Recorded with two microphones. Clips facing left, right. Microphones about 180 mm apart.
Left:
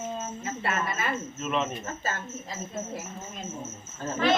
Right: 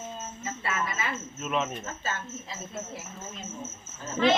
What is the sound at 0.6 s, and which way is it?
Cricket, 55° left (ahead or behind).